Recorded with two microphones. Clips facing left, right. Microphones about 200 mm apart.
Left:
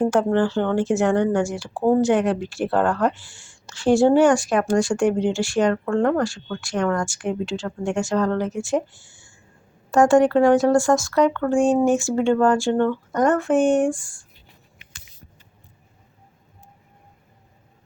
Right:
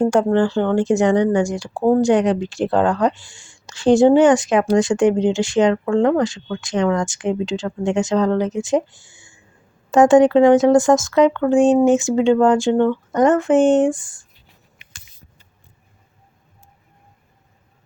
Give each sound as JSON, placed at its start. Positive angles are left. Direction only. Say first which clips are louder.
{"t": 0.0, "sound": "a woman's voice", "louder": "right 3 dB", "side_deg": -15}